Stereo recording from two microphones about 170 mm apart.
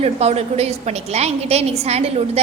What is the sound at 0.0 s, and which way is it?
A woman's voice, 40° right (ahead or behind).